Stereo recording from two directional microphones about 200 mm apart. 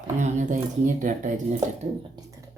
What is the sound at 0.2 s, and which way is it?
Speech, 35° right (ahead or behind).